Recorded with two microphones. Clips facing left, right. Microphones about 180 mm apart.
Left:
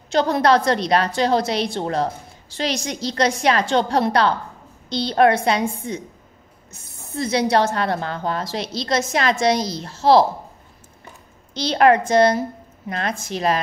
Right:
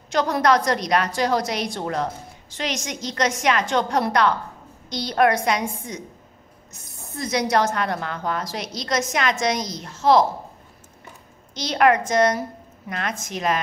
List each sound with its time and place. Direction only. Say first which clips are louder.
0.1 s a woman's voice: left 3 dB; 30° left (ahead or behind)
11.5 s a woman's voice: left 3 dB; 30° left (ahead or behind)